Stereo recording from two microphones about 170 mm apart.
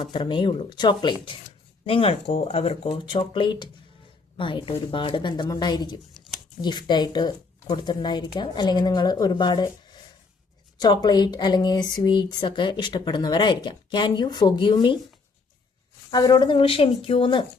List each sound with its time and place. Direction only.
0.0 s speech: 25° left (ahead or behind)
16.0 s speech: 25° left (ahead or behind)